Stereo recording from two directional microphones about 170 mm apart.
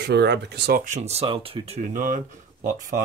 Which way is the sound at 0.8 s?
40° right (ahead or behind).